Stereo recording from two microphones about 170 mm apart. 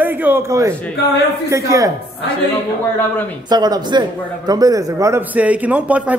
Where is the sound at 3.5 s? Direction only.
25° right (ahead or behind).